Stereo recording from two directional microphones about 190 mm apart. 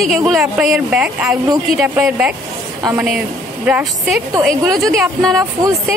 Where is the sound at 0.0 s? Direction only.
Centre (ahead or behind).